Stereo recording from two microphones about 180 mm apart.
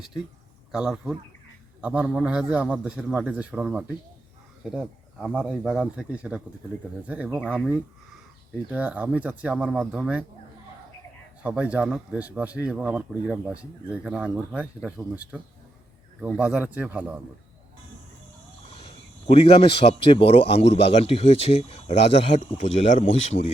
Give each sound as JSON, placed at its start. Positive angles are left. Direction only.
{"t": 0.7, "sound": "speech", "side_deg": -5}
{"t": 11.4, "sound": "speech", "side_deg": -5}
{"t": 16.4, "sound": "speech", "side_deg": -10}
{"t": 18.8, "sound": "speech", "side_deg": 30}